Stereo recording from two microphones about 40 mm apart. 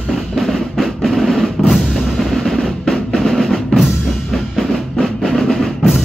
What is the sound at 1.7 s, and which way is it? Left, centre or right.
Percussion, centre.